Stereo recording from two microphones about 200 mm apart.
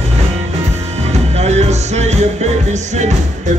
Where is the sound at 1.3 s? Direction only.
35° right (ahead or behind).